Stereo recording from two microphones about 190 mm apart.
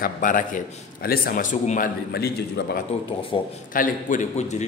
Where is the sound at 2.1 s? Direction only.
60° left (ahead or behind).